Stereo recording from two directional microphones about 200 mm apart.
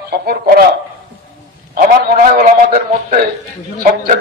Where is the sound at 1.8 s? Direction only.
40° right (ahead or behind).